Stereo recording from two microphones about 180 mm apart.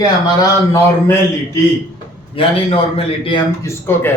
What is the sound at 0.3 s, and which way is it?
Speech, 15° left (ahead or behind).